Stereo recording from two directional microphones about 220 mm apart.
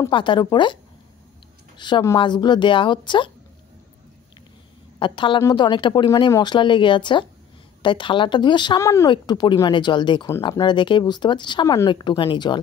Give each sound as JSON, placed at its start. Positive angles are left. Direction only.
{"t": 0.0, "sound": "speech", "side_deg": 20}
{"t": 1.8, "sound": "speech", "side_deg": 20}
{"t": 4.9, "sound": "speech", "side_deg": 20}